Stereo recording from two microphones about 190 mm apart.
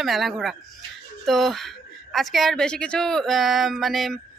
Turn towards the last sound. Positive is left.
turn(degrees=0)  # may be behind; listen again after turning